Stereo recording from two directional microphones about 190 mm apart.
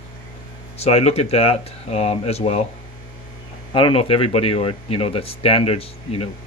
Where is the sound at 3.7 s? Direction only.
30° left (ahead or behind).